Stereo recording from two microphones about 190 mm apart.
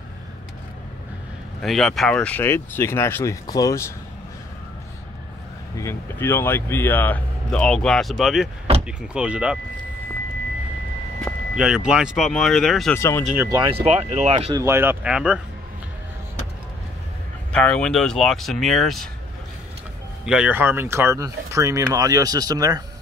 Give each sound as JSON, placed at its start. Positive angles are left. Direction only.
{"t": 1.6, "sound": "speech", "side_deg": 0}
{"t": 5.8, "sound": "speech", "side_deg": 15}
{"t": 11.2, "sound": "speech", "side_deg": -5}
{"t": 12.9, "sound": "speech", "side_deg": 15}
{"t": 13.3, "sound": "speech", "side_deg": -15}
{"t": 13.8, "sound": "speech", "side_deg": -35}
{"t": 14.5, "sound": "speech", "side_deg": -15}
{"t": 17.5, "sound": "speech", "side_deg": 5}
{"t": 20.2, "sound": "speech", "side_deg": -5}